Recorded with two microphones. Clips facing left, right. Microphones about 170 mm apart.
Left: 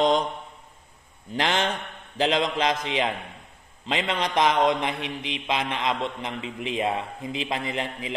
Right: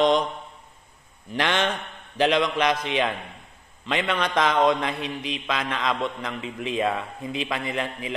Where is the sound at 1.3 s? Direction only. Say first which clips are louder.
Right 1 dB; 25° left (ahead or behind).